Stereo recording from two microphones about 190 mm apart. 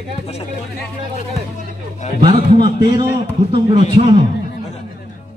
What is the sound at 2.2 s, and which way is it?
A man's voice, 30° right (ahead or behind).